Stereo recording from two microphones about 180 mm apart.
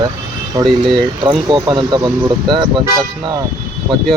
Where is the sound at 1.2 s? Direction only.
25° right (ahead or behind).